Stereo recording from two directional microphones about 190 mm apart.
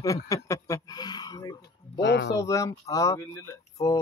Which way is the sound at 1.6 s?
65° left (ahead or behind).